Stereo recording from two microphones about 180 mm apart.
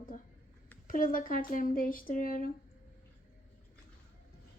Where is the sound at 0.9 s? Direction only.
50° left (ahead or behind).